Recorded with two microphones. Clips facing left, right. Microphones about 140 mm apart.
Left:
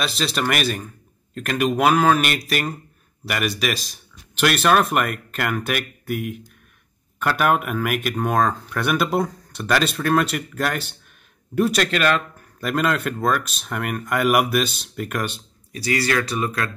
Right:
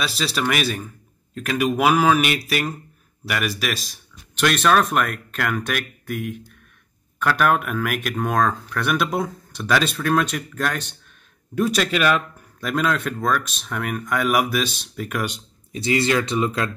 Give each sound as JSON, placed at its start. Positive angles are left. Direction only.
{"t": 0.0, "sound": "speech", "side_deg": 0}
{"t": 15.2, "sound": "speech", "side_deg": -20}